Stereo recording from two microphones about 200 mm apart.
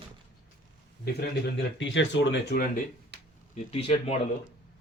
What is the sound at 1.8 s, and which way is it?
Speech, 65° left (ahead or behind).